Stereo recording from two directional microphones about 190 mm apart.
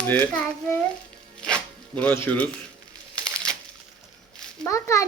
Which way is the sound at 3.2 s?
5° left (ahead or behind).